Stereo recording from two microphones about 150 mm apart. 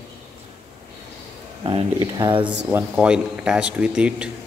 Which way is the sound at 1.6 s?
35° right (ahead or behind).